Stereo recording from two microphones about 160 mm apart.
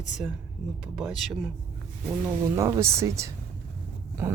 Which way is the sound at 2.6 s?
20° right (ahead or behind).